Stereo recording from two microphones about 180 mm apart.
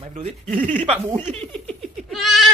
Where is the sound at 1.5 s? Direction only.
Centre (ahead or behind).